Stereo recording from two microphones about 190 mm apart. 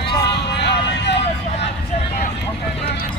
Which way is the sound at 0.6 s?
65° left (ahead or behind).